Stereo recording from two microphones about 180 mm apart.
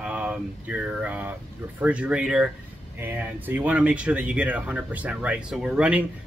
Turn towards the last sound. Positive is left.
turn(degrees=-5)  # may be behind; listen again after turning